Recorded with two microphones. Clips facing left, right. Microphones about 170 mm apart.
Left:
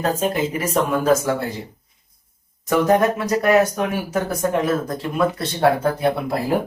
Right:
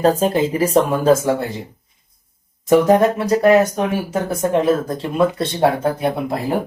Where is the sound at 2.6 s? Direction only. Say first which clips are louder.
Right 4 dB; 25° right (ahead or behind).